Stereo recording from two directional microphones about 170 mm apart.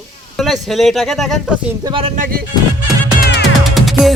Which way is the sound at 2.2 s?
60° right (ahead or behind).